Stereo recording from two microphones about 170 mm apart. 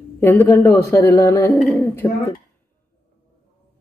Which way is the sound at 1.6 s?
5° left (ahead or behind).